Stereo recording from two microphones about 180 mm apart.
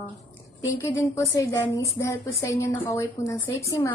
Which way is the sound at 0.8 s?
15° left (ahead or behind).